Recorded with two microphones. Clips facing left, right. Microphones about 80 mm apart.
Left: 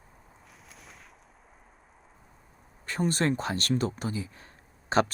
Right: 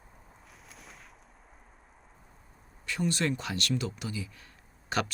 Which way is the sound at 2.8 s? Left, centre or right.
Left.